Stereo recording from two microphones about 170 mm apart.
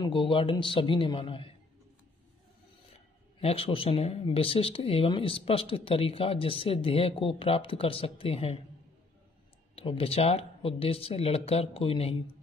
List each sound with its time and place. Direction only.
0.0 s a man's voice: 30° left (ahead or behind)
3.3 s speech: 35° left (ahead or behind)
9.8 s speech: 35° left (ahead or behind)